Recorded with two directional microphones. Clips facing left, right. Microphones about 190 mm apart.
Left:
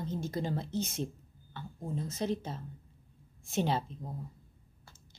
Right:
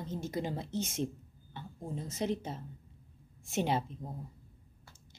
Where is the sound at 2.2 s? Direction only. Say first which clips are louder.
Right 1 dB; 20° right (ahead or behind).